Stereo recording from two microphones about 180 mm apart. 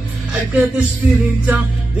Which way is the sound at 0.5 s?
5° right (ahead or behind).